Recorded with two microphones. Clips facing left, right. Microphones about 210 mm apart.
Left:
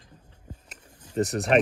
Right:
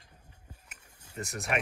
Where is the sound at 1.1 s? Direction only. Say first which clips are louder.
Left 14 dB; 40° left (ahead or behind).